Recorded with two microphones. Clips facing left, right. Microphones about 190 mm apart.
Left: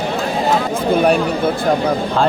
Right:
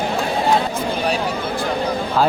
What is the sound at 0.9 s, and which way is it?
Chatter, 55° left (ahead or behind).